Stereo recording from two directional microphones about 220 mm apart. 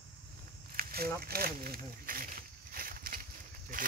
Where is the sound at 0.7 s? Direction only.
45° right (ahead or behind).